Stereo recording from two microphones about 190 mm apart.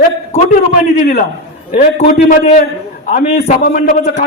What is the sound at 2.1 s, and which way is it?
A man's voice, 50° left (ahead or behind).